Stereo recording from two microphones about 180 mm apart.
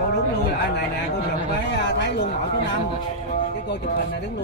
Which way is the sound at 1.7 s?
75° left (ahead or behind).